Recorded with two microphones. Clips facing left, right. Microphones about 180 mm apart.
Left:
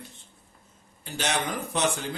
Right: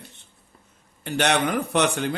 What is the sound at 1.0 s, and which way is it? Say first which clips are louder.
Speech: right 7 dB; 65° right (ahead or behind).